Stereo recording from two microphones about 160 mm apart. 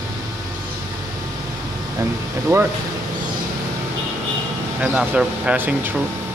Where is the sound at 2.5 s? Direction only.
20° right (ahead or behind).